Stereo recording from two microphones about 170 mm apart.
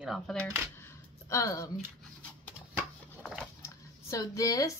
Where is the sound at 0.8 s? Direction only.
15° left (ahead or behind).